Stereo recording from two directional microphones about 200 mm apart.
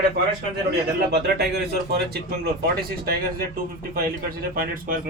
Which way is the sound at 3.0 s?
50° right (ahead or behind).